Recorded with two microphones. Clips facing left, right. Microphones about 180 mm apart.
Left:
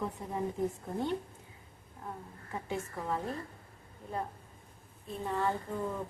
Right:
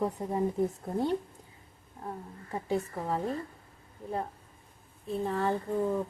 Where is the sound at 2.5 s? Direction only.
35° right (ahead or behind).